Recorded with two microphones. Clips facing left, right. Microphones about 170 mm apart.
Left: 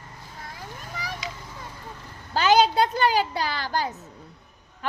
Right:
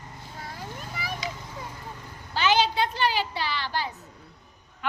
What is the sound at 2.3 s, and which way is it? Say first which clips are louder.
A woman's voice: left 4 dB; 40° left (ahead or behind).